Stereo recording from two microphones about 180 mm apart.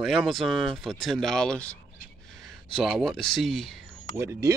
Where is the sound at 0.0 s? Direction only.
Centre (ahead or behind).